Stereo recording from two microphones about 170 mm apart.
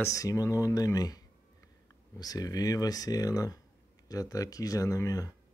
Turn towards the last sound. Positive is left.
turn(degrees=20)  # may be behind; listen again after turning